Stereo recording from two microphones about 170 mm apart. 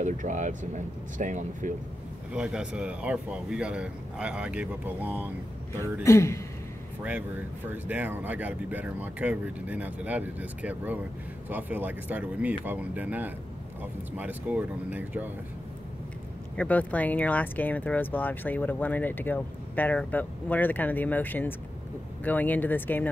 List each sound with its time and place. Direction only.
0.0 s speech: 45° right (ahead or behind)
2.3 s speech: 5° right (ahead or behind)
6.0 s speech: 15° left (ahead or behind)
7.0 s speech: 10° right (ahead or behind)
16.5 s speech: 10° left (ahead or behind)